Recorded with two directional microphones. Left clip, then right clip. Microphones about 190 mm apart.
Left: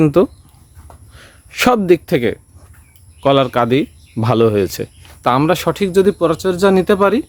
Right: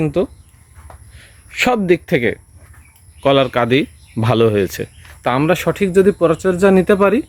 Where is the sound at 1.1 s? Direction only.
30° left (ahead or behind).